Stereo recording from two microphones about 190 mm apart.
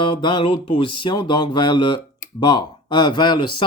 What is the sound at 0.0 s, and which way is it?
Speech, 25° left (ahead or behind).